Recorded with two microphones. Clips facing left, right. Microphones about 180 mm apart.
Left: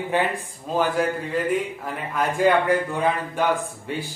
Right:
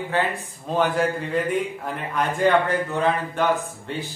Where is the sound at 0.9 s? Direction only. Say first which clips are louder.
Right 1 dB; centre (ahead or behind).